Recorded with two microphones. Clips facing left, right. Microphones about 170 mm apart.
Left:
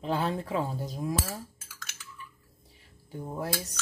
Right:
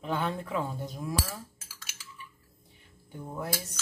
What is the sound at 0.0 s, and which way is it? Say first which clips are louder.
Speech: left 2 dB; 30° left (ahead or behind).